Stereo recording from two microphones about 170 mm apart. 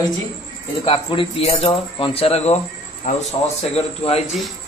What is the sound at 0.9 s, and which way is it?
Speech, 30° left (ahead or behind).